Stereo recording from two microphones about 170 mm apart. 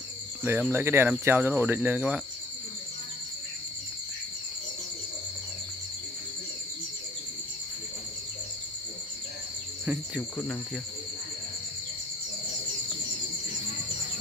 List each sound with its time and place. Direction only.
0.4 s speech: 15° right (ahead or behind)
10.3 s cricket: 10° left (ahead or behind)